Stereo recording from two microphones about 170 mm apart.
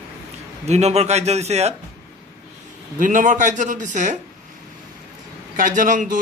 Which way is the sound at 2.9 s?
50° right (ahead or behind).